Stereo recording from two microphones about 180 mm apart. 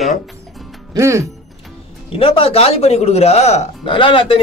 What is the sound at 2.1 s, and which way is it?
Speech, 30° left (ahead or behind).